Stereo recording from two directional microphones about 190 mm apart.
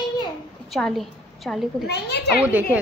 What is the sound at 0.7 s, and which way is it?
A woman's voice, centre (ahead or behind).